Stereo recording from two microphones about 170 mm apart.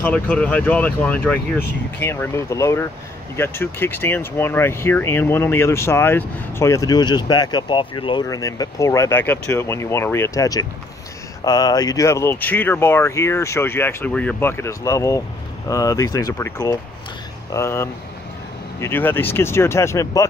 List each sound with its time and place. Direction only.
0.0 s speech: 10° left (ahead or behind)